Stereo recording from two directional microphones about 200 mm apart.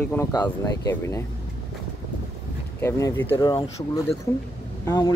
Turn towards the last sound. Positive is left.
turn(degrees=20)  # may be behind; listen again after turning